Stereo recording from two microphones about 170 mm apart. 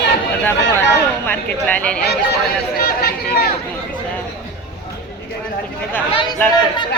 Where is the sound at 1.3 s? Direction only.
10° left (ahead or behind).